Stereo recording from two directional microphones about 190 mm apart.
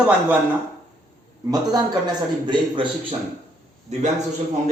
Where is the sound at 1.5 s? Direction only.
20° right (ahead or behind).